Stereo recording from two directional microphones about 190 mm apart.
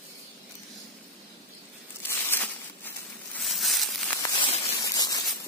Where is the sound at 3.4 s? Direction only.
Centre (ahead or behind).